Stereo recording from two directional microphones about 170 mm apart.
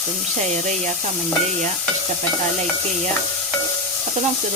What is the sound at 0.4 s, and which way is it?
Speech, 45° right (ahead or behind).